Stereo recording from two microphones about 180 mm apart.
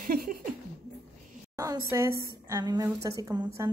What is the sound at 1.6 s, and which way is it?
A woman's voice, 15° right (ahead or behind).